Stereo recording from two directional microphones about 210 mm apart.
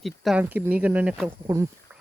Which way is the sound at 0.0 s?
Centre (ahead or behind).